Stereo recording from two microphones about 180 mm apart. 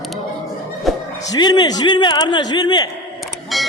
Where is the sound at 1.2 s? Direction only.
20° left (ahead or behind).